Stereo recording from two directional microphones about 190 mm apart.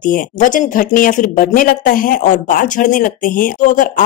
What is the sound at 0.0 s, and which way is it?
Speech, 45° left (ahead or behind).